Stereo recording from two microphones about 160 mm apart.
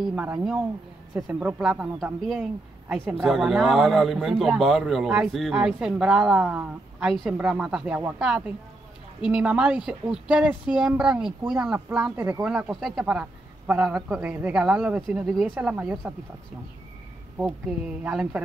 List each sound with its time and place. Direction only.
0.0 s speech: 10° right (ahead or behind)
11.7 s speech: 15° right (ahead or behind)
12.4 s speech: 5° right (ahead or behind)
17.4 s speech: 10° right (ahead or behind)